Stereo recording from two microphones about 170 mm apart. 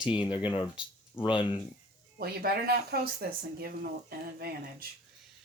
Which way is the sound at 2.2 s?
65° right (ahead or behind).